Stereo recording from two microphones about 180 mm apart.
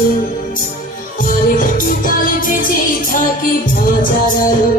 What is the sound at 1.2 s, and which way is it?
Music, 50° left (ahead or behind).